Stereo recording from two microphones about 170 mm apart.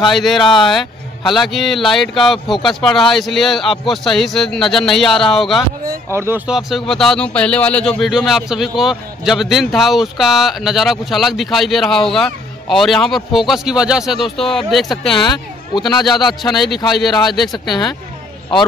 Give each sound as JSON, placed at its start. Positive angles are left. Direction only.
{"t": 0.0, "sound": "speech", "side_deg": 0}
{"t": 6.0, "sound": "speech", "side_deg": -15}
{"t": 15.2, "sound": "a man's voice", "side_deg": 25}
{"t": 16.4, "sound": "speech", "side_deg": 0}
{"t": 17.6, "sound": "a man's voice", "side_deg": 25}